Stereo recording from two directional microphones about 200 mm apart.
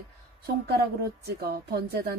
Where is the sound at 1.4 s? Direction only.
55° right (ahead or behind).